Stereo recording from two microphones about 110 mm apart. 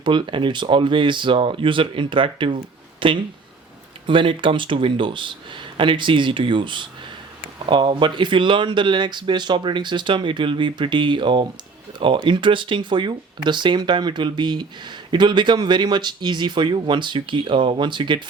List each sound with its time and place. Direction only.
0.0 s speech: 45° right (ahead or behind)